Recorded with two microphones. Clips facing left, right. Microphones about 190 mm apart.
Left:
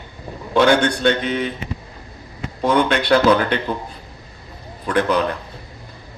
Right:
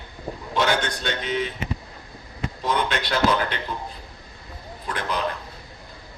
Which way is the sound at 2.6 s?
65° left (ahead or behind).